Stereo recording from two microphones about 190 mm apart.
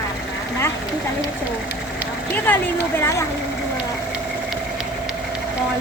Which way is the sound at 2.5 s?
10° left (ahead or behind).